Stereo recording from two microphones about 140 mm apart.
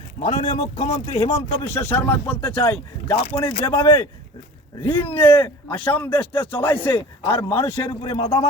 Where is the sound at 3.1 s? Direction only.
40° left (ahead or behind).